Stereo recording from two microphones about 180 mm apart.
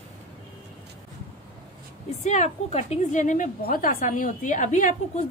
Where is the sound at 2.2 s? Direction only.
40° left (ahead or behind).